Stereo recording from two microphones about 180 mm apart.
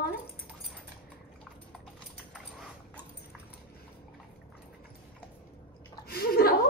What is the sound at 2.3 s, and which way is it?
Dog, centre (ahead or behind).